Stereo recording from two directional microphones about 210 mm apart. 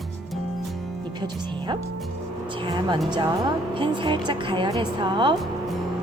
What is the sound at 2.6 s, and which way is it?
Speech, 20° right (ahead or behind).